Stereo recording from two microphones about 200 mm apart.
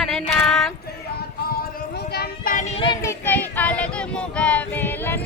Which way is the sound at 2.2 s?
45° left (ahead or behind).